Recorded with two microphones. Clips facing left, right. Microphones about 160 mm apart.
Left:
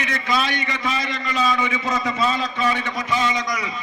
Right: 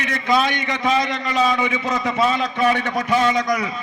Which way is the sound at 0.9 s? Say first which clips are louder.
Right 5 dB; 65° right (ahead or behind).